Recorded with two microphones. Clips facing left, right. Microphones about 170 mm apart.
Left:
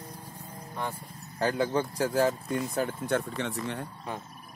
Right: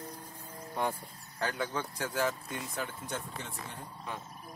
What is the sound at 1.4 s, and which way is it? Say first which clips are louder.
Speech: left 8 dB; 30° left (ahead or behind).